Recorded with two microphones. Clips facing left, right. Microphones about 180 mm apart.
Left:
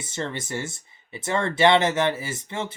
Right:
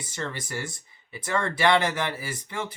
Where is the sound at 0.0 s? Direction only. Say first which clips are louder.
Left 3 dB; 25° left (ahead or behind).